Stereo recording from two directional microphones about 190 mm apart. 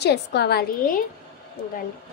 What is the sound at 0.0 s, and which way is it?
A woman's voice, 60° left (ahead or behind).